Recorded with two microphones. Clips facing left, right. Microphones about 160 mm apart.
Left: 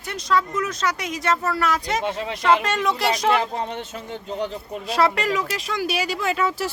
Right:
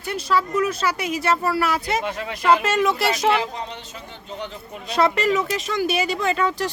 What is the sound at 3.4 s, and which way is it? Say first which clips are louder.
Speech: left 3 dB; 50° left (ahead or behind).